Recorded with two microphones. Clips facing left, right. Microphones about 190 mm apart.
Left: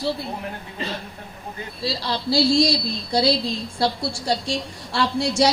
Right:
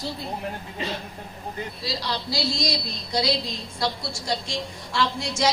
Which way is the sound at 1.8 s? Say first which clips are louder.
Left 6 dB; 30° left (ahead or behind).